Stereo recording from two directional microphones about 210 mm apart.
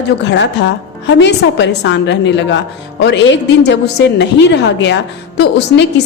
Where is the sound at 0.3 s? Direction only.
55° left (ahead or behind).